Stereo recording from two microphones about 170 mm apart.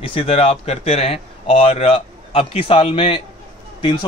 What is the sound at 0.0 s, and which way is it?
A man's voice, 35° left (ahead or behind).